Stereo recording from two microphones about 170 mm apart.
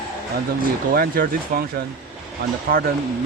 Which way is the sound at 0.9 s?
60° right (ahead or behind).